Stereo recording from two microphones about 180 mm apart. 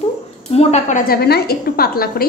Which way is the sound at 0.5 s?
35° left (ahead or behind).